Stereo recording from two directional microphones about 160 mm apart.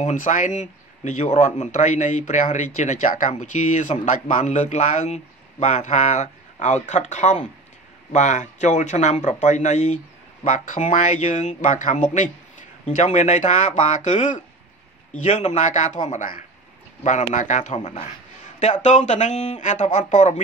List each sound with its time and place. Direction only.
0.0 s speech: 55° left (ahead or behind)